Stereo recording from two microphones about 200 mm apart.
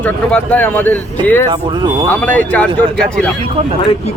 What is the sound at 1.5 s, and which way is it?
Speech, 20° right (ahead or behind).